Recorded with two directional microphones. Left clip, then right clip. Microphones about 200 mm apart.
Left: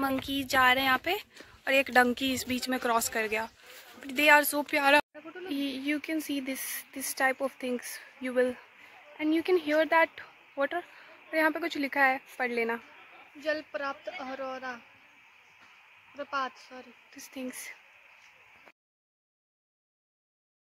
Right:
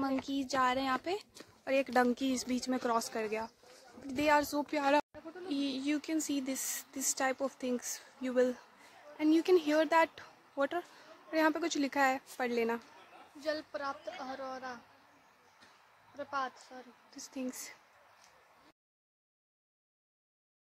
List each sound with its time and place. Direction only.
0.2 s a woman's voice: centre (ahead or behind)
13.4 s a woman's voice: 35° left (ahead or behind)
16.2 s speech: 45° left (ahead or behind)
17.1 s speech: 10° right (ahead or behind)